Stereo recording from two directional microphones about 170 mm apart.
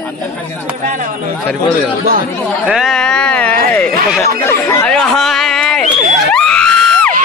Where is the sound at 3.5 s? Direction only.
60° right (ahead or behind).